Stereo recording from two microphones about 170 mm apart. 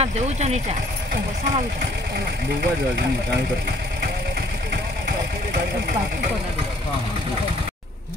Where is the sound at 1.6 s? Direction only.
75° right (ahead or behind).